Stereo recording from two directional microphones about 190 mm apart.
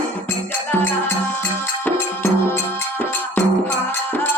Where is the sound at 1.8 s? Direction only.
10° left (ahead or behind).